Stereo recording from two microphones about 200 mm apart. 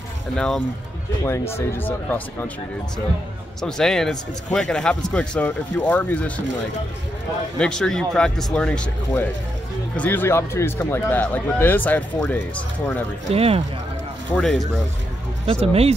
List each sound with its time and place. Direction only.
1.2 s speech: 15° left (ahead or behind)
3.6 s speech: centre (ahead or behind)
7.5 s speech: 5° left (ahead or behind)
13.3 s speech: 30° right (ahead or behind)
14.3 s speech: centre (ahead or behind)
15.4 s speech: 30° right (ahead or behind)